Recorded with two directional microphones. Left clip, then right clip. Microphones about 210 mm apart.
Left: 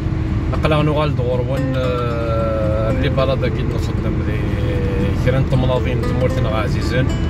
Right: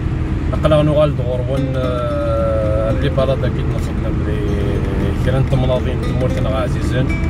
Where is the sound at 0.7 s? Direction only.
30° left (ahead or behind).